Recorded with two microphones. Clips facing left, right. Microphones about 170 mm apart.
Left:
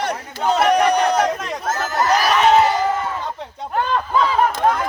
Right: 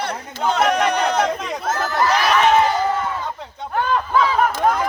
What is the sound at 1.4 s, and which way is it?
Chatter, centre (ahead or behind).